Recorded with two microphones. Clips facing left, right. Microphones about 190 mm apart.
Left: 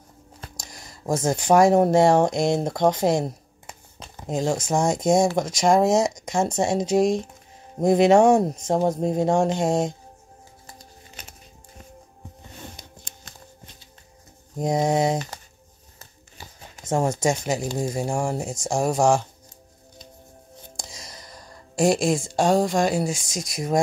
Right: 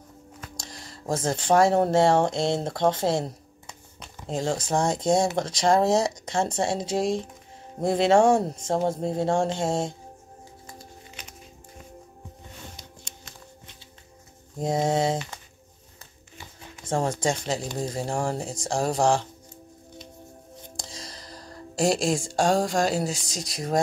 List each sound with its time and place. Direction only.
0.6 s speech: 15° left (ahead or behind)
14.6 s speech: 15° left (ahead or behind)
15.1 s speech: 40° left (ahead or behind)
17.2 s speech: 15° left (ahead or behind)
20.7 s music: 35° right (ahead or behind)
21.7 s speech: 10° left (ahead or behind)
23.1 s speech: 35° right (ahead or behind)